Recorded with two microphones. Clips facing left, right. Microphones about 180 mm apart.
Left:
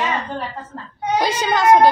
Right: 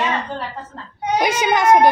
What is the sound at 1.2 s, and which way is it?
Speech, 20° right (ahead or behind).